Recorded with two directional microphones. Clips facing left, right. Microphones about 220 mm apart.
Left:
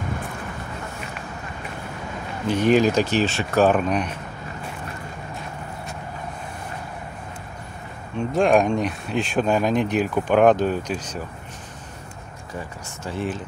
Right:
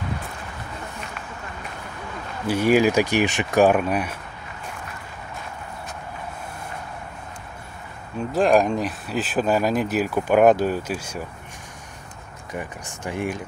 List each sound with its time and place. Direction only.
2.4 s speech: 10° right (ahead or behind)
8.2 s speech: centre (ahead or behind)
12.5 s speech: 15° right (ahead or behind)